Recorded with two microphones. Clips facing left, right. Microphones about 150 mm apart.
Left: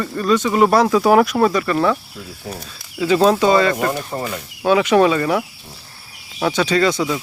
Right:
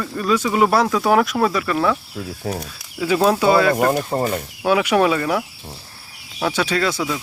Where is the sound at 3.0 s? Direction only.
5° right (ahead or behind).